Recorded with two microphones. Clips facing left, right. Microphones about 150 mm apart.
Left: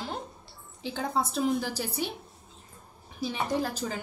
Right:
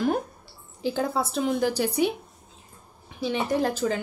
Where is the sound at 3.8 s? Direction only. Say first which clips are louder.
Right 8 dB; 90° right.